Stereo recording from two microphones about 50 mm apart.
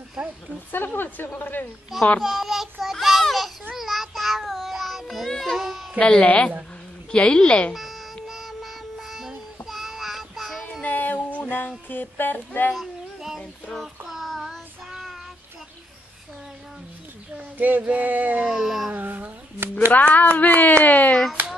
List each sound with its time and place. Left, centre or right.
0.7 s speech: left
1.9 s a sound: centre
2.2 s child singing: centre
5.9 s a woman's voice: left
7.7 s music: centre
9.7 s child singing: centre
10.8 s child singing: left
11.9 s speech: left
12.8 s child singing: centre
17.6 s a sound: right
18.4 s a sound: centre
18.9 s a sound: right
19.9 s speech: left